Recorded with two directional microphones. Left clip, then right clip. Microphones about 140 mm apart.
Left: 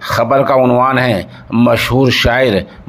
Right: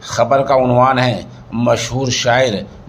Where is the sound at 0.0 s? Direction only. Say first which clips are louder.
Left 2 dB; 45° left (ahead or behind).